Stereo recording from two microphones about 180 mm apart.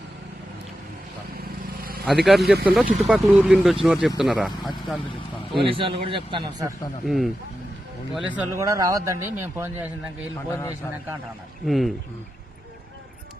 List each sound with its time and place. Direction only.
1.8 s vehicle: 55° right (ahead or behind)
2.0 s speech: centre (ahead or behind)
5.6 s a man's voice: 30° right (ahead or behind)
7.0 s speech: centre (ahead or behind)
8.4 s a man's voice: 15° right (ahead or behind)
11.6 s speech: centre (ahead or behind)